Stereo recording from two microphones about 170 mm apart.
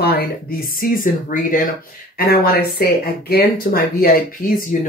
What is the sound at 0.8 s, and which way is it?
Speech, 55° left (ahead or behind).